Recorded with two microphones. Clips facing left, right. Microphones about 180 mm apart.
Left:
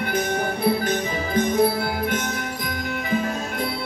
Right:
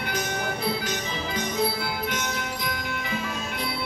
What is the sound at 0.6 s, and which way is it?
Music, 50° left (ahead or behind).